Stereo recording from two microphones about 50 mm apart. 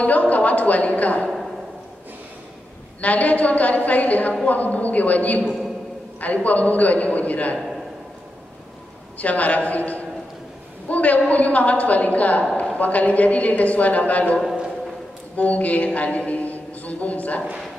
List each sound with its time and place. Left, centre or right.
0.0 s a woman's voice: left
3.0 s a woman's voice: left
5.4 s a man's voice: centre
6.2 s a woman's voice: left
7.5 s a sound: centre
9.2 s a woman's voice: left